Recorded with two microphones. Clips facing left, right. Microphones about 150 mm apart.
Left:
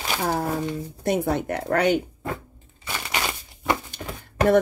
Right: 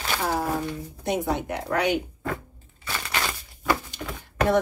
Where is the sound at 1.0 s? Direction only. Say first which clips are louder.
Left 3 dB; 55° left (ahead or behind).